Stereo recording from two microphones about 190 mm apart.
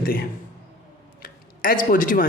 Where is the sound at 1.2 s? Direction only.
45° left (ahead or behind).